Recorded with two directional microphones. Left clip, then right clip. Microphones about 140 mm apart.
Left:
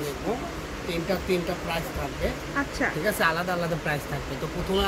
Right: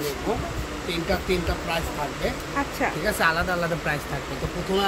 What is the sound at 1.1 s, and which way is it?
Speech, 5° left (ahead or behind).